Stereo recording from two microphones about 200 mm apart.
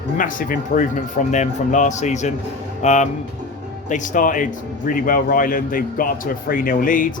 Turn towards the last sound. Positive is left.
turn(degrees=40)  # may be behind; listen again after turning